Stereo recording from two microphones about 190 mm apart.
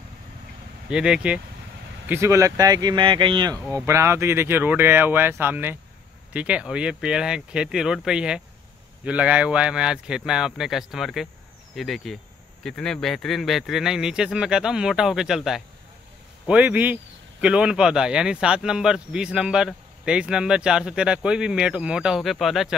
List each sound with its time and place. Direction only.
0.8 s speech: 5° right (ahead or behind)